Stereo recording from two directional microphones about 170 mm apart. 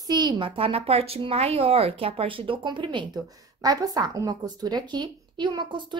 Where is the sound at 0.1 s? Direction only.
25° right (ahead or behind).